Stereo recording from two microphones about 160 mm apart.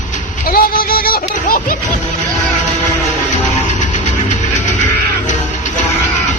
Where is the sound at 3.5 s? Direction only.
45° left (ahead or behind).